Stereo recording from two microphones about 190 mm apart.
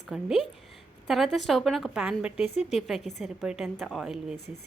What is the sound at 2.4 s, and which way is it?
Speech, 35° left (ahead or behind).